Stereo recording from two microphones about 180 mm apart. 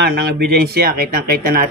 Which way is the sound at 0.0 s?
60° right (ahead or behind).